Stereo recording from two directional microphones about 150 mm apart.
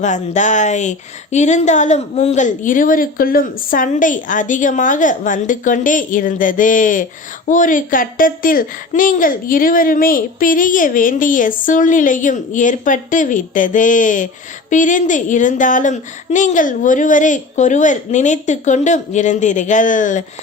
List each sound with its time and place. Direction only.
0.0 s speech: 55° left (ahead or behind)